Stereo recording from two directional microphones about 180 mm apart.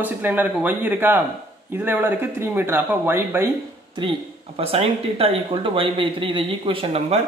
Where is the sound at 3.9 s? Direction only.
30° right (ahead or behind).